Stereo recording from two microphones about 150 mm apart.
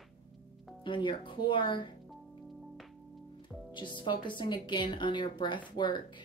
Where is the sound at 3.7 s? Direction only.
30° left (ahead or behind).